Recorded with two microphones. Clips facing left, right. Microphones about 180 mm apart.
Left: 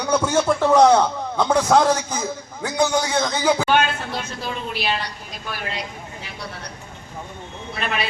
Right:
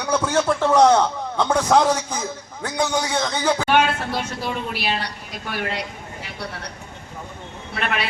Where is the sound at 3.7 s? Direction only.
70° right (ahead or behind).